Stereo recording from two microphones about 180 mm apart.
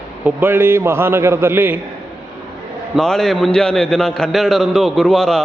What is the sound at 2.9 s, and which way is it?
A man's voice, centre (ahead or behind).